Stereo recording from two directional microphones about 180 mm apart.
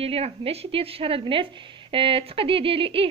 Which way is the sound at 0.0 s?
35° right (ahead or behind).